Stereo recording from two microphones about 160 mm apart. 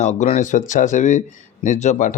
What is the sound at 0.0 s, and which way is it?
A man's voice, 45° left (ahead or behind).